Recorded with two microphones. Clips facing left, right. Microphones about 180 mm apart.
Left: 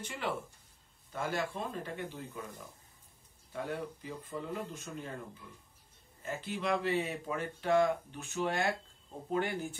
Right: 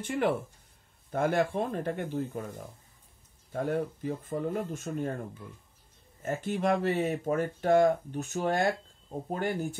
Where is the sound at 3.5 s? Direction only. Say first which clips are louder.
Right 8 dB; 50° right (ahead or behind).